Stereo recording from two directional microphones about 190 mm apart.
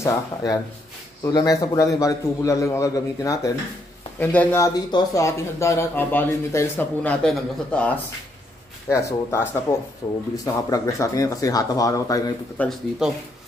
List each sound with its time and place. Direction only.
0.0 s speech: 20° left (ahead or behind)
12.5 s speech: centre (ahead or behind)